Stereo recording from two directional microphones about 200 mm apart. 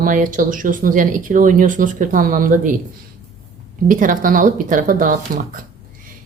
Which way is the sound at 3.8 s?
40° right (ahead or behind).